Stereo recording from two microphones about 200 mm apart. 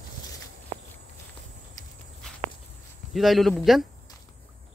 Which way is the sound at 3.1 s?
Centre (ahead or behind).